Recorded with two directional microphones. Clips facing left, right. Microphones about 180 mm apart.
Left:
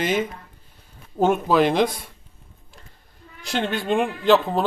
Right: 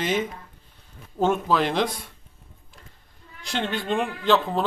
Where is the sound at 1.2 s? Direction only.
15° left (ahead or behind).